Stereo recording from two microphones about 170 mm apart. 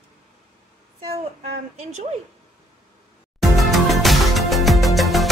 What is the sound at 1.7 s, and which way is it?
Speech, 40° right (ahead or behind).